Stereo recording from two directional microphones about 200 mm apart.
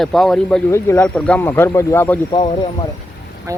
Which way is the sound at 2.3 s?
25° left (ahead or behind).